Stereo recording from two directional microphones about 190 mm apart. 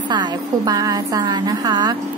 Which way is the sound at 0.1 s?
20° right (ahead or behind).